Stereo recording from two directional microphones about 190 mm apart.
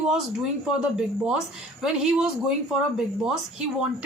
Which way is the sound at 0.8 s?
5° right (ahead or behind).